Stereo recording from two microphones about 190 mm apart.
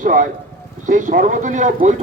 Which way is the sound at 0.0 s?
45° right (ahead or behind).